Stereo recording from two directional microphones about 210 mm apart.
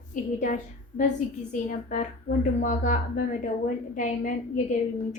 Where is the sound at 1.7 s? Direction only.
40° left (ahead or behind).